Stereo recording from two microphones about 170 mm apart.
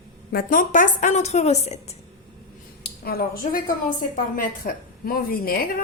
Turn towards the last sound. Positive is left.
turn(degrees=60)  # may be behind; listen again after turning